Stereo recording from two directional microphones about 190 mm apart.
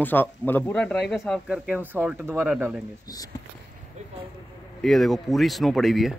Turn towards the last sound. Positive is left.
turn(degrees=0)  # may be behind; listen again after turning